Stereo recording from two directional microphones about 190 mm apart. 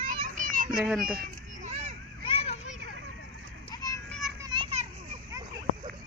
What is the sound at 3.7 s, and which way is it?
Children playing, 20° left (ahead or behind).